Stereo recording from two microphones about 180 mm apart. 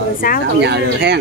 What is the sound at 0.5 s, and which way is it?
Speech, 70° right (ahead or behind).